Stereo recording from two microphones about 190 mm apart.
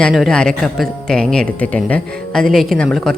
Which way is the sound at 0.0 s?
Centre (ahead or behind).